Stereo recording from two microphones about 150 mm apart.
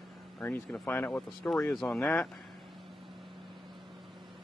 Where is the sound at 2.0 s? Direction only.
Centre (ahead or behind).